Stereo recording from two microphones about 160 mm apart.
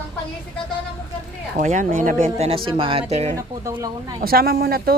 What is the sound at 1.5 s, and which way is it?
Speech, 50° right (ahead or behind).